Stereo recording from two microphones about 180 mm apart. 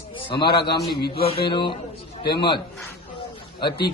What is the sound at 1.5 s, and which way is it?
A man's voice, 25° left (ahead or behind).